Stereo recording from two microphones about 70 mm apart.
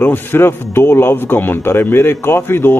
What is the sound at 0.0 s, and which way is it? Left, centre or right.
A man's voice, left.